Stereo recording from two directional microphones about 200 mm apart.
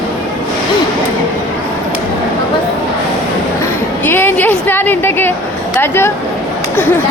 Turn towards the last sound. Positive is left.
turn(degrees=10)  # may be behind; listen again after turning